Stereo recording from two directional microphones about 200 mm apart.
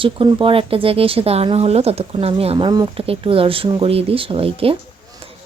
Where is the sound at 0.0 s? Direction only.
25° right (ahead or behind).